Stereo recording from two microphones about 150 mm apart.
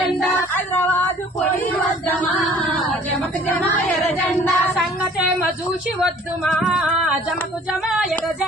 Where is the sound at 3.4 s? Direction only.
10° left (ahead or behind).